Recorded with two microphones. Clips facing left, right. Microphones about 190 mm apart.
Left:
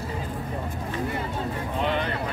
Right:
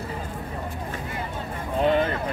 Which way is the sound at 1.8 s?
40° right (ahead or behind).